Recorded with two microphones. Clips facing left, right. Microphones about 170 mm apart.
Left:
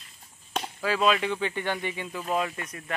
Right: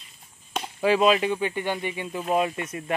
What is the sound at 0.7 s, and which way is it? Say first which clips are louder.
Speech: right 5 dB; 20° right (ahead or behind).